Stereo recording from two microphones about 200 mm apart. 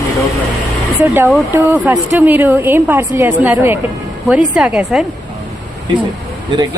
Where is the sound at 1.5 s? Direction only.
10° right (ahead or behind).